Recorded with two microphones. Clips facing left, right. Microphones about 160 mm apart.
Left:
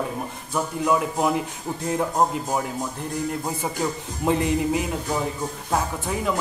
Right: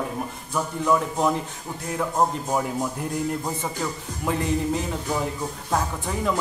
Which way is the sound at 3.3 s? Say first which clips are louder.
Even; 10° left (ahead or behind).